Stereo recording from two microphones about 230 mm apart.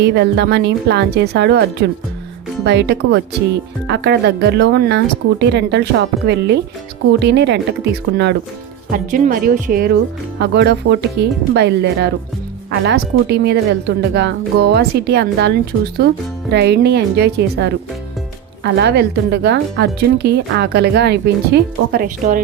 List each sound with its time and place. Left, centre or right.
0.0 s a woman's voice: right
2.6 s a woman's voice: right
8.9 s a woman's voice: right